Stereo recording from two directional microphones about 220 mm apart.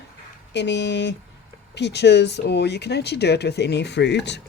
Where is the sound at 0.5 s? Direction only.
55° left (ahead or behind).